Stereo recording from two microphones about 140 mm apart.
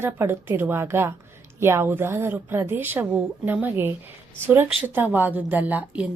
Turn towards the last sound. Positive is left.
turn(degrees=-10)  # may be behind; listen again after turning